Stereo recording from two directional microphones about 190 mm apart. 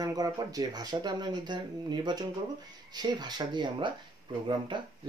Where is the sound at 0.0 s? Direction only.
20° right (ahead or behind).